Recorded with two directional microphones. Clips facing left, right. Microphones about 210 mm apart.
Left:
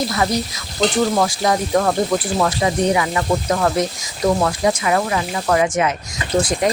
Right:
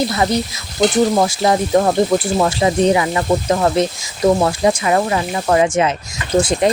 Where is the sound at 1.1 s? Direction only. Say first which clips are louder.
Right 3 dB; 25° right (ahead or behind).